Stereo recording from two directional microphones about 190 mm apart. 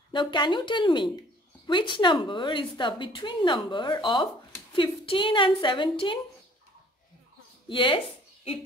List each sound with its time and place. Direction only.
0.1 s a woman's voice: 25° left (ahead or behind)
7.6 s a woman's voice: 25° left (ahead or behind)